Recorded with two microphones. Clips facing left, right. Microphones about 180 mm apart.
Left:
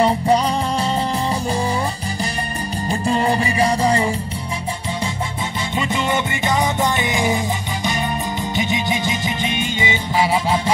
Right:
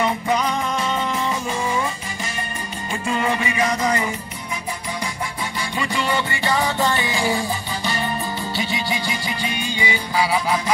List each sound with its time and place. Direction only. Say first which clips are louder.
0.0 s music: left 5 dB; 35° left (ahead or behind)
2.9 s music: left 4 dB; 35° left (ahead or behind)
5.8 s music: left 2 dB; 20° left (ahead or behind)